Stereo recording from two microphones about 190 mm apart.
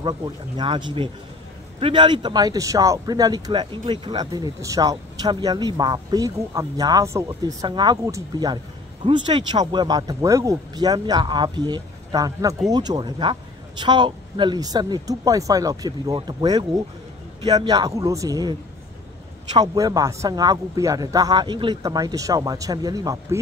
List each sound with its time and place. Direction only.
0.6 s speech: 25° right (ahead or behind)